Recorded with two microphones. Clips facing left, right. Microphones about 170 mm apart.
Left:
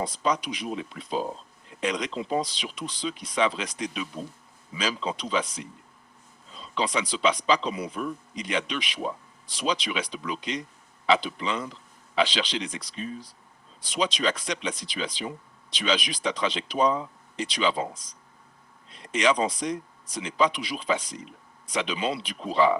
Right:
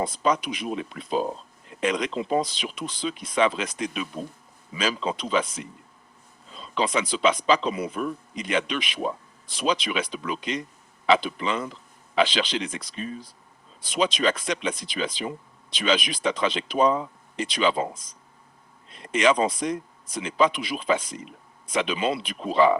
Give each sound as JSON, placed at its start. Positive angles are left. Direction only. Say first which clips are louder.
{"t": 0.0, "sound": "speech", "louder": "right 3 dB", "side_deg": -55}